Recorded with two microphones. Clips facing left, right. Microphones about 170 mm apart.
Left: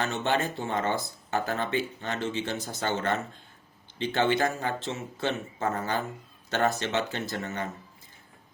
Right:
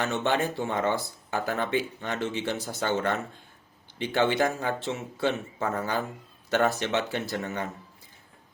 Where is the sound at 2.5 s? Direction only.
15° left (ahead or behind).